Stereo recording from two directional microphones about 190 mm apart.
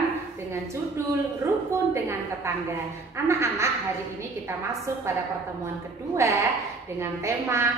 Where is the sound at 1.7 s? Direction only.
15° right (ahead or behind).